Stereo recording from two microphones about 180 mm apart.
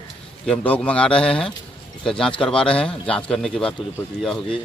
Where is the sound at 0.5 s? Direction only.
5° left (ahead or behind).